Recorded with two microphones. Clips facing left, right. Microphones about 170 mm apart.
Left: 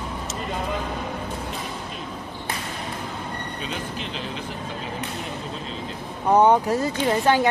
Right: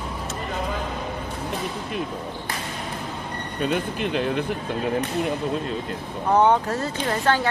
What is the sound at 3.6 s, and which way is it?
Speech, 55° right (ahead or behind).